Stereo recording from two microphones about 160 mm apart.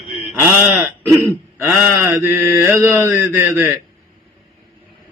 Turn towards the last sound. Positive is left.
turn(degrees=-15)  # may be behind; listen again after turning